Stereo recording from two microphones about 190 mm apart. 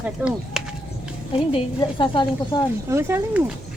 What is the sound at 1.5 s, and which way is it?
A woman's voice, 25° left (ahead or behind).